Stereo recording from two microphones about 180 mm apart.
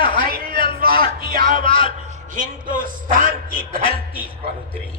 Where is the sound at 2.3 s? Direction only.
50° right (ahead or behind).